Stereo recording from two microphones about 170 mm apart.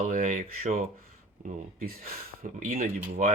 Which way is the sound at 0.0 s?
50° right (ahead or behind).